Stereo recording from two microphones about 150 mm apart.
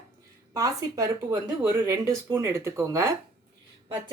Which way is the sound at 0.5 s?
25° right (ahead or behind).